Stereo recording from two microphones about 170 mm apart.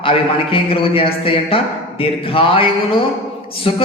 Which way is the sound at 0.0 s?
35° left (ahead or behind).